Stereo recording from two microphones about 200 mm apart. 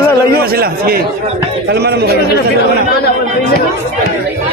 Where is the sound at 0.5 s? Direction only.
50° right (ahead or behind).